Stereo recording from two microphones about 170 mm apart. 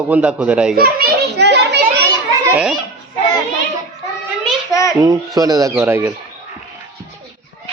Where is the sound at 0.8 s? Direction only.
65° right (ahead or behind); by 1.8 s 80° right.